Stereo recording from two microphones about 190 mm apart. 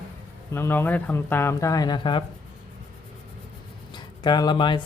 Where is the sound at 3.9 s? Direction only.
25° left (ahead or behind).